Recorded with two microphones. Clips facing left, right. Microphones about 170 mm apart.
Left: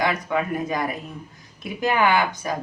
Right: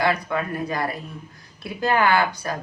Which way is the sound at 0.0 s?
15° left (ahead or behind).